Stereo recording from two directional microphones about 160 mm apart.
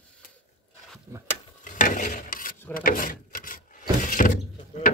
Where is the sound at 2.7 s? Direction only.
60° left (ahead or behind).